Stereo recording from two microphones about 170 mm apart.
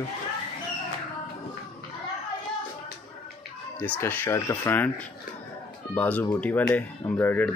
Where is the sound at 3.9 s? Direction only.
10° left (ahead or behind).